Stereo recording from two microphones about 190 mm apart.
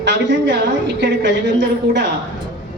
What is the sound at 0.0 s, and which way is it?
A man's voice, 65° right (ahead or behind).